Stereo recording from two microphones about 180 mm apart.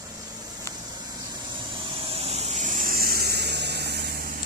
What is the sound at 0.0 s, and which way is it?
Vehicle, 20° right (ahead or behind).